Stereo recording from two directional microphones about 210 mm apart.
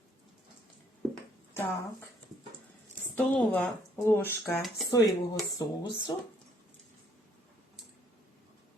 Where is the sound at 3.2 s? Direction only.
5° left (ahead or behind).